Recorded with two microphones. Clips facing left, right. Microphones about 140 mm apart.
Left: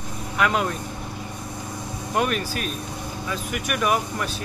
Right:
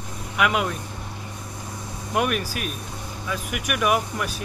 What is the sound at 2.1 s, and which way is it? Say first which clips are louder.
Speech: even; 10° right (ahead or behind).